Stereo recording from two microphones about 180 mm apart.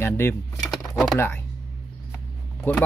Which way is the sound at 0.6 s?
Centre (ahead or behind).